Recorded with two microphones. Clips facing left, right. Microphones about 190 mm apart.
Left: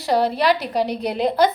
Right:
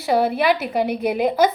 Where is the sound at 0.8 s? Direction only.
55° right (ahead or behind).